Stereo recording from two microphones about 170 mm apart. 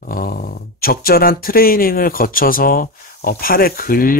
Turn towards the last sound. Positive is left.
turn(degrees=55)  # may be behind; listen again after turning